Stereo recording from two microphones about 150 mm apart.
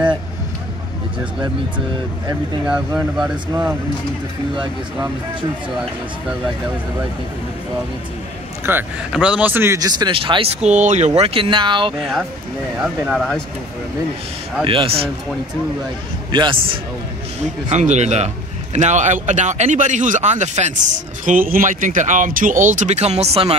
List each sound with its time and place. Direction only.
2.6 s speech: 5° right (ahead or behind)
8.6 s speech: 10° right (ahead or behind); by 11.1 s 50° right (ahead or behind)
11.1 s speech: 40° right (ahead or behind)
12.8 s speech: 5° right (ahead or behind)
14.6 s speech: 35° right (ahead or behind)
16.3 s speech: 30° right (ahead or behind)
17.6 s a man's voice: 50° right (ahead or behind)
21.3 s speech: 65° right (ahead or behind); by 23.5 s 40° right (ahead or behind)